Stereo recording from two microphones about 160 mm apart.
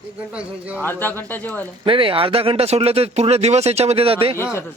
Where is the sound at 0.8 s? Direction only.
10° left (ahead or behind).